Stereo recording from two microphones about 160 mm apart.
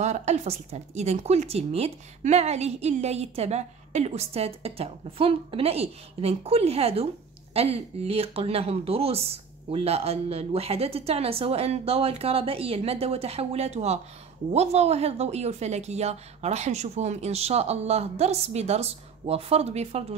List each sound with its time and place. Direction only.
0.0 s a woman's voice: 45° right (ahead or behind)